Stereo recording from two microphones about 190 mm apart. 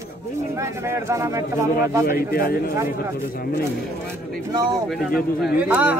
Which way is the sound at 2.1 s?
50° left (ahead or behind).